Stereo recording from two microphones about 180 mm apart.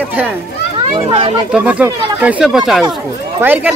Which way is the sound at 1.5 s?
5° right (ahead or behind).